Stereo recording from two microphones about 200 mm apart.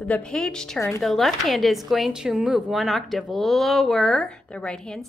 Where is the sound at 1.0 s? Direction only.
Centre (ahead or behind).